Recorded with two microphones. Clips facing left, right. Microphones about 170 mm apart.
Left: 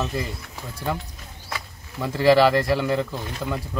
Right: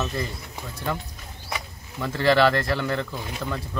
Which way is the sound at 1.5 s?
15° right (ahead or behind).